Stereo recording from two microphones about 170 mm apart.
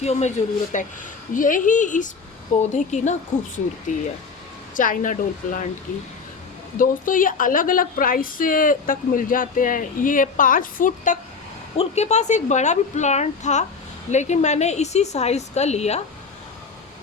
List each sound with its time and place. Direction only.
0.0 s a woman's voice: 40° left (ahead or behind)
6.7 s a woman's voice: 55° left (ahead or behind)